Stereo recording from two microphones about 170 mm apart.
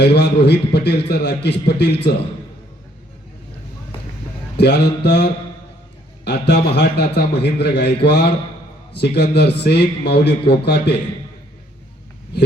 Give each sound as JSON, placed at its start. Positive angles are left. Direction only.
{"t": 0.0, "sound": "a man's voice", "side_deg": 80}
{"t": 4.5, "sound": "a man's voice", "side_deg": 80}